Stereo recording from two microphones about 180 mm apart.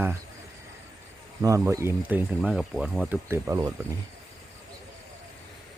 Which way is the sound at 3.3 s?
15° right (ahead or behind).